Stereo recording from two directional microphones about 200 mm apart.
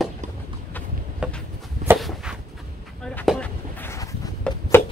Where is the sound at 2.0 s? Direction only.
Centre (ahead or behind).